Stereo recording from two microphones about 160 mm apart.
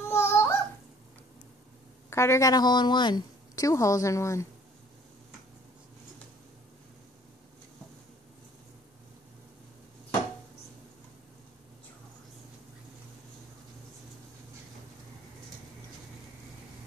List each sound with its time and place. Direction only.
0.1 s babbling: 15° left (ahead or behind)
2.0 s a woman's voice: 15° left (ahead or behind)